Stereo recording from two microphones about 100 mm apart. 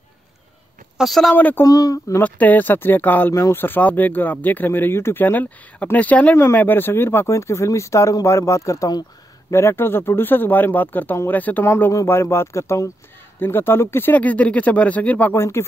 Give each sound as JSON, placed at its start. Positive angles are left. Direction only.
{"t": 0.9, "sound": "speech", "side_deg": 0}
{"t": 1.3, "sound": "speech", "side_deg": 20}
{"t": 1.6, "sound": "speech", "side_deg": 35}
{"t": 2.2, "sound": "speech", "side_deg": 15}